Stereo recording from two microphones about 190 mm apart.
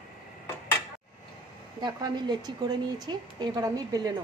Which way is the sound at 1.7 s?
25° right (ahead or behind).